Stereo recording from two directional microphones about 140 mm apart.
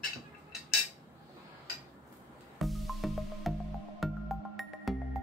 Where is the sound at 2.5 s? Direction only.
Centre (ahead or behind).